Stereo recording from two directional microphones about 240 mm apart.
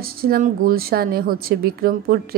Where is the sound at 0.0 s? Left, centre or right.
Right.